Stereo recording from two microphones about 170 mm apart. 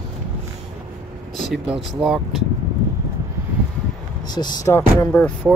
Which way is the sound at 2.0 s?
5° right (ahead or behind).